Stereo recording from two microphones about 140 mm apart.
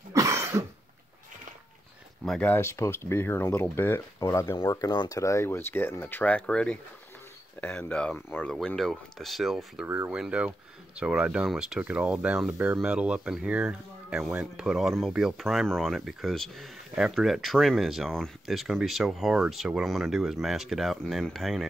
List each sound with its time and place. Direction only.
0.1 s cough: 20° right (ahead or behind)
2.2 s speech: 5° left (ahead or behind)
2.5 s speech: 20° left (ahead or behind); by 9.8 s centre (ahead or behind)
9.8 s speech: 15° right (ahead or behind)